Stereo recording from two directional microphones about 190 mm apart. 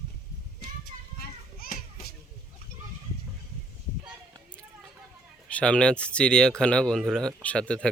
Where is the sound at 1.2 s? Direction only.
50° left (ahead or behind).